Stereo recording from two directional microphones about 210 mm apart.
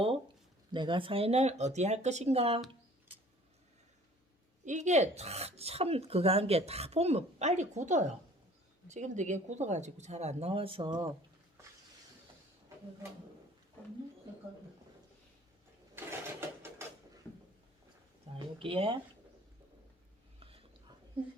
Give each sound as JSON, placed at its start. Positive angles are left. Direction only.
{"t": 0.7, "sound": "speech", "side_deg": -25}
{"t": 4.6, "sound": "speech", "side_deg": -35}
{"t": 16.0, "sound": "mechanisms", "side_deg": -10}
{"t": 18.3, "sound": "a sound", "side_deg": -25}
{"t": 18.6, "sound": "speech", "side_deg": -25}
{"t": 20.4, "sound": "a sound", "side_deg": -25}